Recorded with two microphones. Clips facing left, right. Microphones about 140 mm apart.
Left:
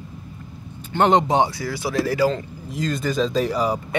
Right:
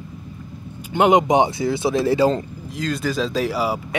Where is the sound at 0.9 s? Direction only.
10° right (ahead or behind).